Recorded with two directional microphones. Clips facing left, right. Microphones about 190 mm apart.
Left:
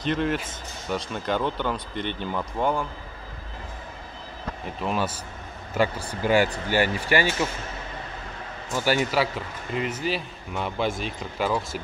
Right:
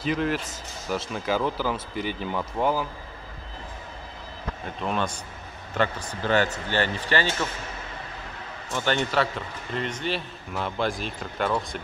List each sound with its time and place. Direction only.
0.0 s a man's voice: centre (ahead or behind)
4.6 s a man's voice: 5° left (ahead or behind)
8.7 s a man's voice: 5° left (ahead or behind)